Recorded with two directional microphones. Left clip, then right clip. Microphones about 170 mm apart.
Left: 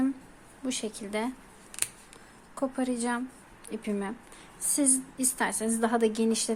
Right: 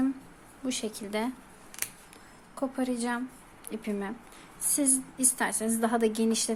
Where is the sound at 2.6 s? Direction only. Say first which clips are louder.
Left 1 dB; 10° left (ahead or behind).